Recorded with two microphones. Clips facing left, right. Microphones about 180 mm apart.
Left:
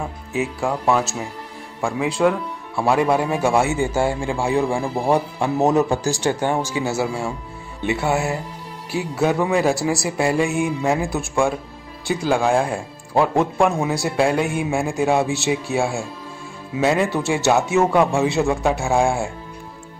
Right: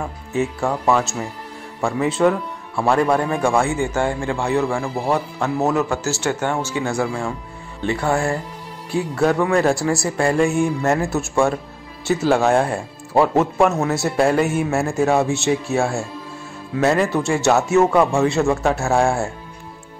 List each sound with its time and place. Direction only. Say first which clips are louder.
0.3 s a man's voice: right 2 dB; centre (ahead or behind)
10.0 s speech: right 1 dB; 15° left (ahead or behind)
10.3 s a man's voice: right 2 dB; centre (ahead or behind)
11.1 s a man's voice: right 2 dB; centre (ahead or behind)